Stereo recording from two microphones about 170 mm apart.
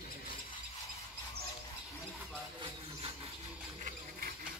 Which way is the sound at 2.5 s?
35° right (ahead or behind).